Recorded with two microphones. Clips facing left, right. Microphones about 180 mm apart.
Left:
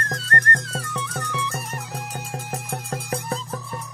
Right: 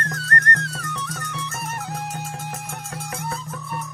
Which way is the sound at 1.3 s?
60° left (ahead or behind).